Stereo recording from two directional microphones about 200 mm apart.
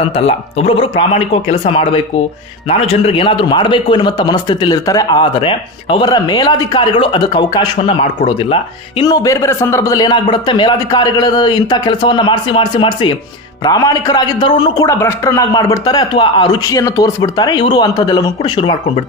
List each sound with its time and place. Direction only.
0.1 s a man's voice: 30° left (ahead or behind)